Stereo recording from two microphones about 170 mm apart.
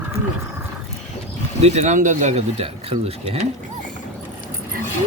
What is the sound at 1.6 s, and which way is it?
Speech, 40° right (ahead or behind).